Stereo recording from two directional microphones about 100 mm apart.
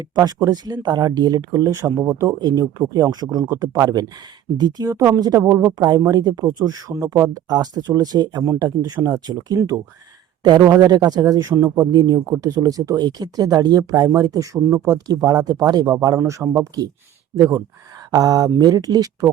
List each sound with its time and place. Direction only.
0.2 s speech: 40° right (ahead or behind)
4.5 s speech: 40° right (ahead or behind)
5.7 s speech: 40° right (ahead or behind)
10.4 s speech: 45° right (ahead or behind); by 16.6 s 25° right (ahead or behind)
17.3 s speech: 35° right (ahead or behind)